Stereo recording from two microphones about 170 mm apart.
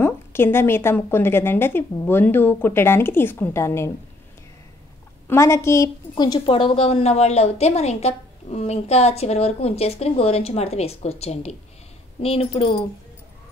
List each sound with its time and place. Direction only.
0.0 s a woman's voice: 15° left (ahead or behind)
5.3 s a woman's voice: 15° left (ahead or behind); by 12.8 s 35° left (ahead or behind)